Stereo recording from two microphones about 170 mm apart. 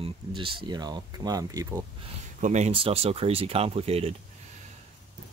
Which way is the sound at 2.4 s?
45° right (ahead or behind).